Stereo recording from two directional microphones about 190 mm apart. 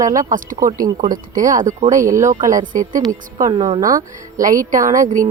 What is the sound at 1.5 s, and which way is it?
Speech, 40° right (ahead or behind).